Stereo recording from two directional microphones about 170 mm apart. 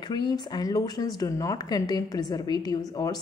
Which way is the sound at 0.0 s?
25° left (ahead or behind).